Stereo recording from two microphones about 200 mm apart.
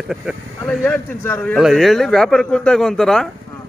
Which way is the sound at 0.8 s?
10° left (ahead or behind).